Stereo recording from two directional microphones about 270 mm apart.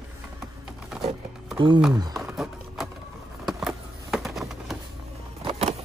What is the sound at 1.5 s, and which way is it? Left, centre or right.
Speech, centre.